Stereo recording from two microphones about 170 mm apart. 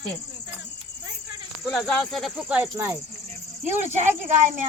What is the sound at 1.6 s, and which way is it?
Speech, centre (ahead or behind).